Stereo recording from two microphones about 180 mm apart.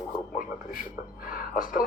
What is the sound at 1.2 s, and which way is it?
Speech, 50° left (ahead or behind).